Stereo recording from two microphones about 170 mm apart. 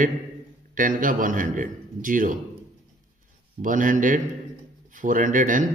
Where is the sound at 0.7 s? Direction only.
50° right (ahead or behind).